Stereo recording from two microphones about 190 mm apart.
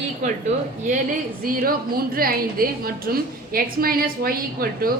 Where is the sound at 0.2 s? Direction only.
40° right (ahead or behind).